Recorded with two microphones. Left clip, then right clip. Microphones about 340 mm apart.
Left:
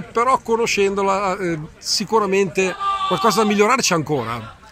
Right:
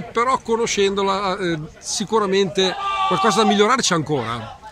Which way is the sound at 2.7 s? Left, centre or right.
Right.